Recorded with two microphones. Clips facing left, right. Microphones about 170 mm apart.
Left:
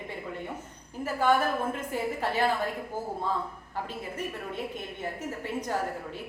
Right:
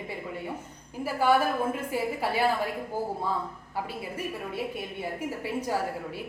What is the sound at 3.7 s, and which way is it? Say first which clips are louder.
A woman's voice: right 1 dB; 10° right (ahead or behind).